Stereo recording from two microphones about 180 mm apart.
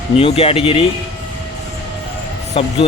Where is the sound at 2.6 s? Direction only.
30° left (ahead or behind).